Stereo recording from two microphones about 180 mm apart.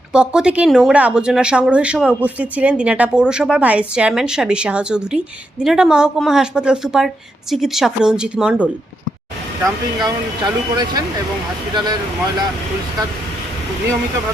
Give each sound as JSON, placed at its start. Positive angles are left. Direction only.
{"t": 0.1, "sound": "speech", "side_deg": -5}
{"t": 9.6, "sound": "speech", "side_deg": -20}